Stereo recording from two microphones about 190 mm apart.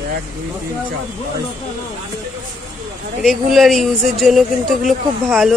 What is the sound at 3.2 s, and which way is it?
Speech, centre (ahead or behind).